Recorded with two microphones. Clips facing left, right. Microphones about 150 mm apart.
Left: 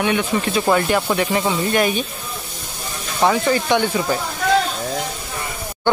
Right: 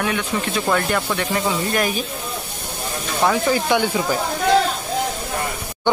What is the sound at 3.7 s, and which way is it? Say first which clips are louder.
Speech: left 1 dB; 10° right (ahead or behind).